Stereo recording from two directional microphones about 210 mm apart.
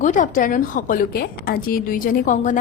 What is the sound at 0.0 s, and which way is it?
Speech, 35° left (ahead or behind).